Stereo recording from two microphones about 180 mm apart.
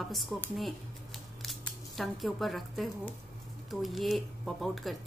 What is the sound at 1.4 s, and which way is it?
A woman's voice, centre (ahead or behind).